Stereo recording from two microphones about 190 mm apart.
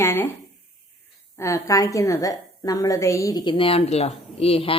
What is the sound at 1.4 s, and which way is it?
A woman's voice, 15° left (ahead or behind).